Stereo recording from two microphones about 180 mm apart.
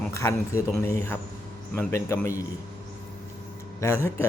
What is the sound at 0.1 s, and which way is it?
Speech, 15° left (ahead or behind).